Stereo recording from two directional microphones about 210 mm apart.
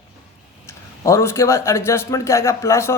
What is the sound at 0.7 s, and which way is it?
A man's voice, 15° left (ahead or behind).